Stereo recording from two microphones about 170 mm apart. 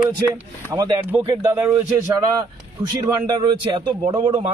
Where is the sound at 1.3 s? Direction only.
15° right (ahead or behind).